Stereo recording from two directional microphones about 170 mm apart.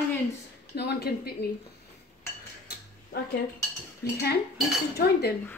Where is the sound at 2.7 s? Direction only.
70° left (ahead or behind).